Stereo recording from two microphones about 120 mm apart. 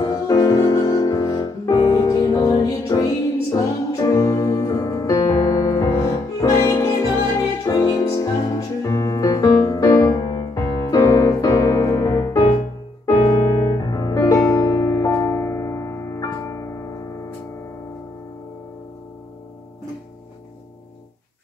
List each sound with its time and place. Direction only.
0.0 s music: 30° left (ahead or behind)